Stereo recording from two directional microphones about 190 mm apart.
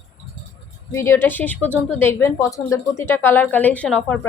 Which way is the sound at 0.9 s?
15° left (ahead or behind).